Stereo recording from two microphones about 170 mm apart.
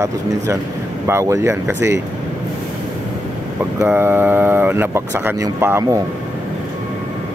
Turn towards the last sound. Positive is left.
turn(degrees=-15)  # may be behind; listen again after turning